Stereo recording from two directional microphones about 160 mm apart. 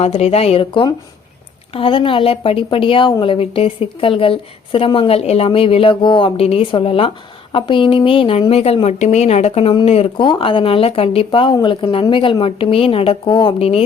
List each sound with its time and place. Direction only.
0.0 s a woman's voice: 40° left (ahead or behind)
13.6 s a woman's voice: 40° left (ahead or behind)